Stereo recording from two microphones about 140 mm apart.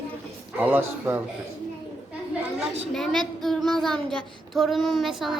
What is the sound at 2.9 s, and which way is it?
A woman's voice, centre (ahead or behind).